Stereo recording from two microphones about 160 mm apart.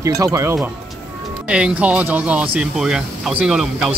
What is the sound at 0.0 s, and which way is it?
Speech, 20° right (ahead or behind).